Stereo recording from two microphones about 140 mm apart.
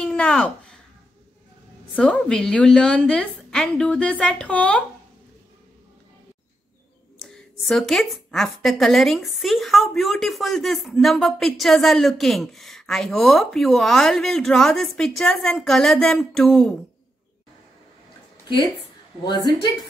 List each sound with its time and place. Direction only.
0.0 s a sound: 5° left (ahead or behind)
2.0 s a woman's voice: 5° left (ahead or behind)
7.2 s a woman's voice: 5° left (ahead or behind)
19.2 s a woman's voice: 30° left (ahead or behind)